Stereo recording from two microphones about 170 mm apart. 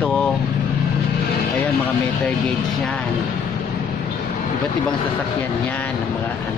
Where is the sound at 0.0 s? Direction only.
10° left (ahead or behind).